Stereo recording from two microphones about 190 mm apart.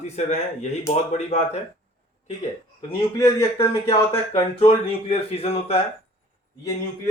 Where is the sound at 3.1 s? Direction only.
15° left (ahead or behind).